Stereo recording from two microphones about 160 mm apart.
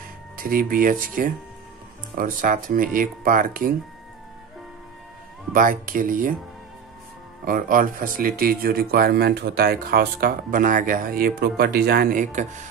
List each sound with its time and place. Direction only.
0.4 s speech: 65° right (ahead or behind)
5.5 s speech: 55° right (ahead or behind)
7.4 s speech: 60° right (ahead or behind)